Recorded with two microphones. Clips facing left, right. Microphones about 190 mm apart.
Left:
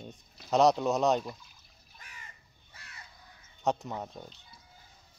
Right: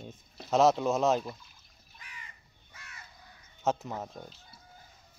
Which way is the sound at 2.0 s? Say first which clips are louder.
Right 1 dB; 45° left (ahead or behind).